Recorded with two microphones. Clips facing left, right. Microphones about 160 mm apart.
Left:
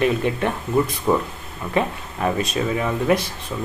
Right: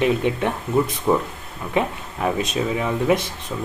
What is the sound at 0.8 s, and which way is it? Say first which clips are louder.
Speech: even; 5° right (ahead or behind).